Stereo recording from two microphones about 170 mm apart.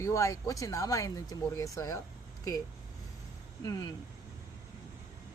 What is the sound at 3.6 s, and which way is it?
Speech, 25° left (ahead or behind).